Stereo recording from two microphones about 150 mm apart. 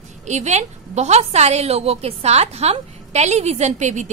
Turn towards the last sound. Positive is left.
turn(degrees=-55)  # may be behind; listen again after turning